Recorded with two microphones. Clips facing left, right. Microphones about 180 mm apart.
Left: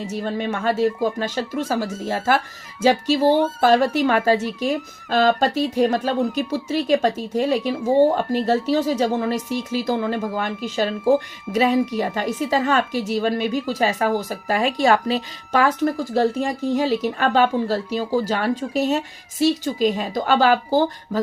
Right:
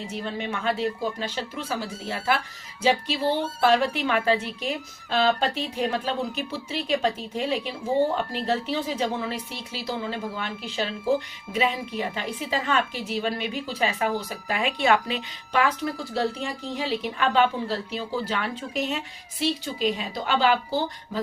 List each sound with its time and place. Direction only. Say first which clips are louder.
0.0 s a woman's voice: left 6 dB; 40° left (ahead or behind)